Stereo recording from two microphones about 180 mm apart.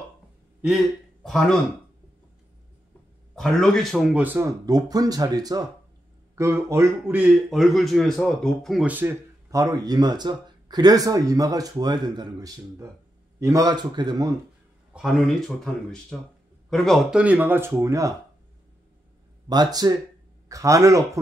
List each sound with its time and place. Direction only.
0.6 s a man's voice: centre (ahead or behind)
3.3 s a man's voice: centre (ahead or behind); by 14.3 s 20° right (ahead or behind)
15.0 s a man's voice: centre (ahead or behind); by 18.1 s 15° right (ahead or behind)
19.5 s a man's voice: 20° right (ahead or behind)